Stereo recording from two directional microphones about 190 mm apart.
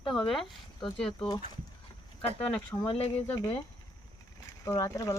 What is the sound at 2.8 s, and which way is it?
Speech, 30° left (ahead or behind).